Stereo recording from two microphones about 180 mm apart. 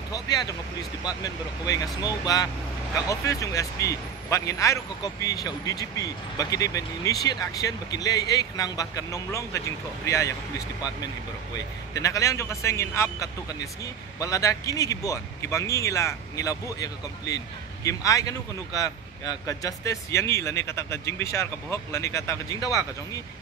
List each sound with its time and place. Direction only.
0.1 s a man's voice: 20° left (ahead or behind)
11.9 s a man's voice: 20° left (ahead or behind)